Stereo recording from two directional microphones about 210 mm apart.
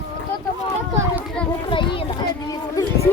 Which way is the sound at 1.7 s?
25° left (ahead or behind).